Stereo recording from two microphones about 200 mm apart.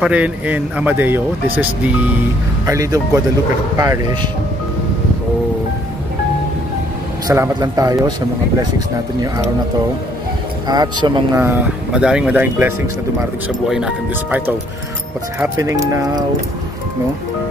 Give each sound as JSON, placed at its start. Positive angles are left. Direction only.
{"t": 0.0, "sound": "speech", "side_deg": -5}
{"t": 7.2, "sound": "speech", "side_deg": -15}
{"t": 10.7, "sound": "speech", "side_deg": -20}
{"t": 11.4, "sound": "speech", "side_deg": -5}